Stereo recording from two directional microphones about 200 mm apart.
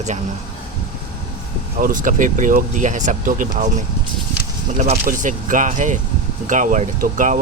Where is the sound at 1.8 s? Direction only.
45° right (ahead or behind).